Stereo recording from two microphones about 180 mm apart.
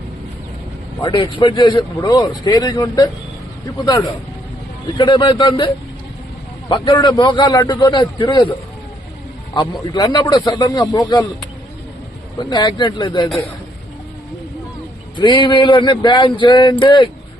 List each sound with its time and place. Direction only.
1.0 s a man's voice: 25° left (ahead or behind)
9.9 s a man's voice: 25° left (ahead or behind)
12.4 s a man's voice: 25° left (ahead or behind)
15.2 s a man's voice: 25° left (ahead or behind)